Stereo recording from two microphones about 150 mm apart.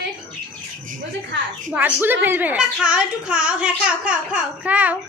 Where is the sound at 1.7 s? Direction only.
15° right (ahead or behind).